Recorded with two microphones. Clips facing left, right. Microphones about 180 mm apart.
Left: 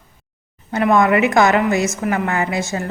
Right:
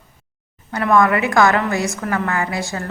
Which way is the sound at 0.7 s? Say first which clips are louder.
Left 1 dB; 20° left (ahead or behind).